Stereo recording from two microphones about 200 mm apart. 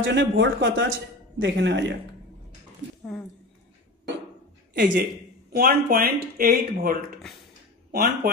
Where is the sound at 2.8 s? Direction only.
65° right (ahead or behind).